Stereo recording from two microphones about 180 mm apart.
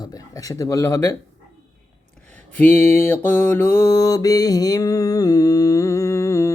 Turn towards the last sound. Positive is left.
turn(degrees=15)  # may be behind; listen again after turning